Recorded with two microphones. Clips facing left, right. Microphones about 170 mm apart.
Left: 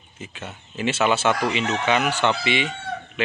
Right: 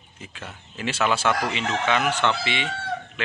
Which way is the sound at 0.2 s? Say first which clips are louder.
Left 3 dB; 5° left (ahead or behind).